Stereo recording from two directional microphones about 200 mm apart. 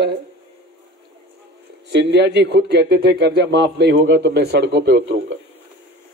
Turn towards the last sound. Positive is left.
turn(degrees=-55)  # may be behind; listen again after turning